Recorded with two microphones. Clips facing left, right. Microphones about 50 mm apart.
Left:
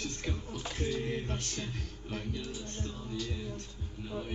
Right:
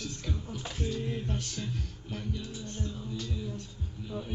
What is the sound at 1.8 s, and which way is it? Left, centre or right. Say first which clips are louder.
Music: even; centre.